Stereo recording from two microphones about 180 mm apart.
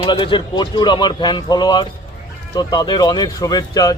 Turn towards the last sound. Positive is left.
turn(degrees=20)  # may be behind; listen again after turning